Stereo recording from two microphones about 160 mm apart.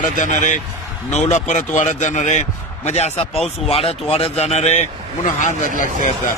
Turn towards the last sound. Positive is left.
turn(degrees=55)  # may be behind; listen again after turning